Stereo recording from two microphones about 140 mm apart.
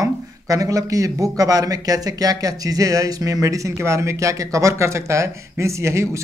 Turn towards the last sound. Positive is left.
turn(degrees=-20)  # may be behind; listen again after turning